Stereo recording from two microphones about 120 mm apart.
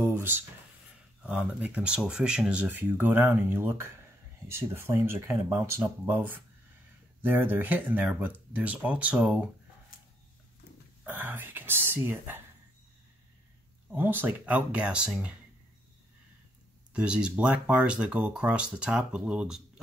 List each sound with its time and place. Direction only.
0.0 s a sound: 20° right (ahead or behind)
1.2 s speech: 10° right (ahead or behind)
11.1 s speech: 15° right (ahead or behind)
13.8 s speech: 15° right (ahead or behind)
16.9 s speech: 10° right (ahead or behind)